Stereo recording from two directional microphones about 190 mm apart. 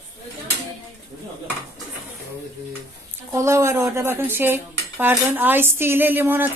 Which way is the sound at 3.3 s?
15° right (ahead or behind).